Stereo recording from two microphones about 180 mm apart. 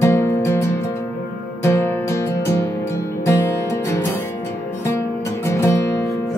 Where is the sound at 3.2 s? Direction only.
15° left (ahead or behind).